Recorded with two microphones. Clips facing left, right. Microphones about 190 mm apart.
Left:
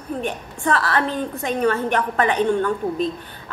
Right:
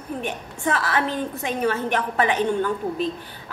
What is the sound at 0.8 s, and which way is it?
A woman's voice, 15° right (ahead or behind).